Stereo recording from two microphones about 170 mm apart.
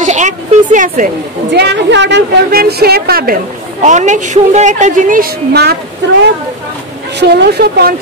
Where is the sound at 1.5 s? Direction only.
85° right; by 3.3 s 60° right (ahead or behind).